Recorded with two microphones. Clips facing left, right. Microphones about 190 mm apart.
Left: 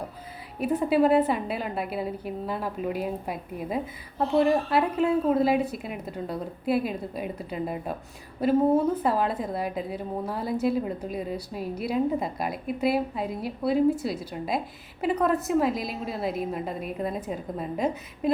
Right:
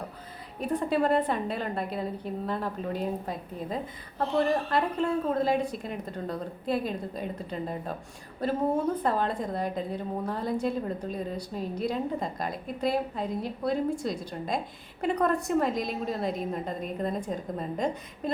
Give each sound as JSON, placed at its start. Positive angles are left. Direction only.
{"t": 0.6, "sound": "a woman's voice", "side_deg": 5}
{"t": 9.0, "sound": "a woman's voice", "side_deg": 5}